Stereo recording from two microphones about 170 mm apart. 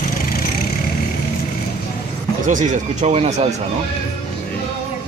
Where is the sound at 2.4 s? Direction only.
45° right (ahead or behind).